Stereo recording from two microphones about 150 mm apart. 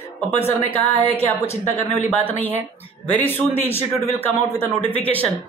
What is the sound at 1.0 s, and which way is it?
A woman's voice, 10° left (ahead or behind).